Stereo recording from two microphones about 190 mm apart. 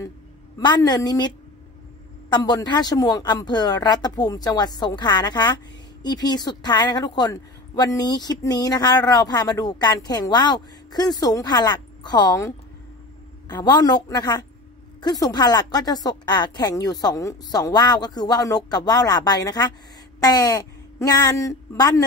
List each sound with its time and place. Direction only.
0.6 s speech: 20° left (ahead or behind)